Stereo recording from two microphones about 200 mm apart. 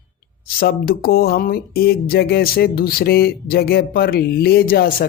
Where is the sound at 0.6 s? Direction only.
50° left (ahead or behind).